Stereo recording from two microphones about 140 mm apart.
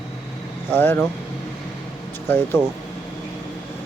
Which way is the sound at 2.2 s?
15° left (ahead or behind).